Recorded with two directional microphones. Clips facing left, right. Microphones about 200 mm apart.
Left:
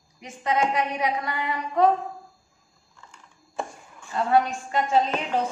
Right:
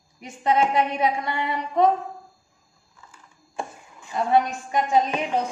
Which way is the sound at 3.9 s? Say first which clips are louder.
Right 1 dB; 20° right (ahead or behind).